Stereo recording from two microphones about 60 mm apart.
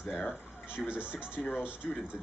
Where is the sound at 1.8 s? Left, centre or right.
Centre.